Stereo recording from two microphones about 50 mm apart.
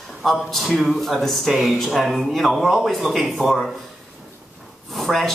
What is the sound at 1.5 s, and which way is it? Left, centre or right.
Speech, centre.